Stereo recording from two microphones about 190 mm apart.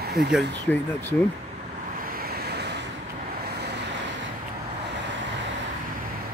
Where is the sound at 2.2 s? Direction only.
55° right (ahead or behind).